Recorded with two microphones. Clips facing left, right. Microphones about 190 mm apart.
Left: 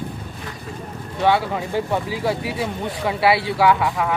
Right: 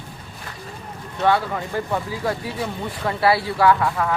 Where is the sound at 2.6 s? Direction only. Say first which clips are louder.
Left 2 dB; 5° left (ahead or behind).